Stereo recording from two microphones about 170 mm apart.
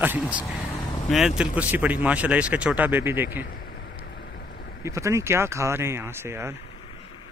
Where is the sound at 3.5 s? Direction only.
65° left (ahead or behind); by 4.8 s 85° left.